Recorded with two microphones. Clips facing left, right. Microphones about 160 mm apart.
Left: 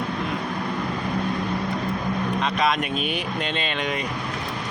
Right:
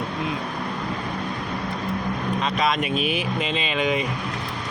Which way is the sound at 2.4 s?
Centre (ahead or behind).